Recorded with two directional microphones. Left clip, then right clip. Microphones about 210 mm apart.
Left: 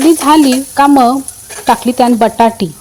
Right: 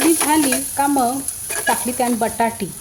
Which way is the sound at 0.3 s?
40° left (ahead or behind).